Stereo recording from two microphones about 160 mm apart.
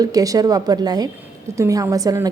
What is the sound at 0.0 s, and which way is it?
A woman's voice, 20° right (ahead or behind).